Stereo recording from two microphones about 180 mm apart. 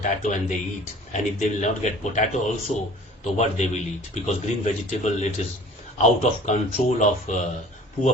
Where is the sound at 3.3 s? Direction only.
40° left (ahead or behind).